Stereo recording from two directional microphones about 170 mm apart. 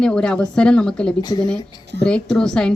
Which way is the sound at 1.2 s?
25° left (ahead or behind).